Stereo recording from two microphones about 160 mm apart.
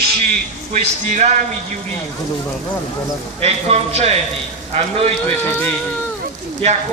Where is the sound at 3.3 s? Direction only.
40° right (ahead or behind).